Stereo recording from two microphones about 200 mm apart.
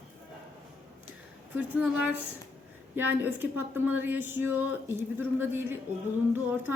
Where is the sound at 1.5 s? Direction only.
10° right (ahead or behind).